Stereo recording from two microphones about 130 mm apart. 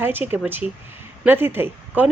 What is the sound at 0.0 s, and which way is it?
Speech, 15° right (ahead or behind).